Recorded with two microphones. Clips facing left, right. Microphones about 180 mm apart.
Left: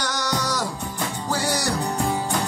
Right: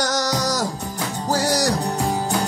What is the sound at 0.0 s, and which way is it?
Music, 40° right (ahead or behind).